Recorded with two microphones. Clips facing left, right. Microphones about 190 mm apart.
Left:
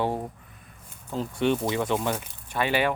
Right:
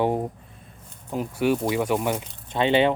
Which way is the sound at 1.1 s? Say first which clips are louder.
Right 2 dB; 10° right (ahead or behind).